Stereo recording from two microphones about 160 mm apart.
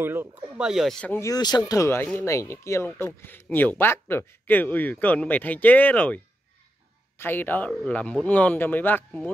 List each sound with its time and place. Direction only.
0.0 s speech: 15° right (ahead or behind); by 1.3 s 10° left (ahead or behind)
1.3 s speech: 25° left (ahead or behind)